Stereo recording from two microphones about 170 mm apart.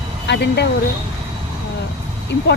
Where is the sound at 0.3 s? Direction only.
80° left.